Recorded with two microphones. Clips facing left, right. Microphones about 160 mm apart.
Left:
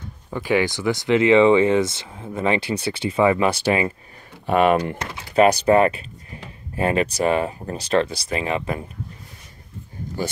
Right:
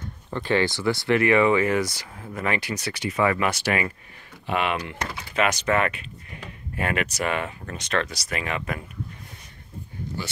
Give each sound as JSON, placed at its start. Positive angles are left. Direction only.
{"t": 0.3, "sound": "speech", "side_deg": 10}
{"t": 4.5, "sound": "speech", "side_deg": 45}